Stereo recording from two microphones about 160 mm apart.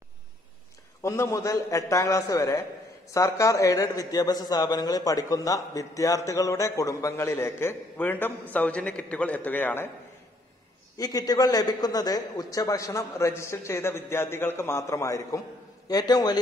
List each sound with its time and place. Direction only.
1.0 s a man's voice: 15° left (ahead or behind)
11.0 s a man's voice: 25° left (ahead or behind)